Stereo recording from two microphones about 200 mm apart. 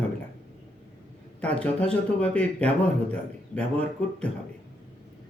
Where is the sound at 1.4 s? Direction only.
5° left (ahead or behind).